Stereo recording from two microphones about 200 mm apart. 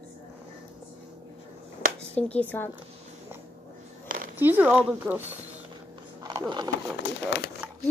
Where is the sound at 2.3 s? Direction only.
10° left (ahead or behind).